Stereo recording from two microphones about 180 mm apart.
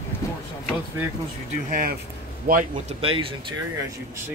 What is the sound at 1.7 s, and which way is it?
A man's voice, 55° right (ahead or behind).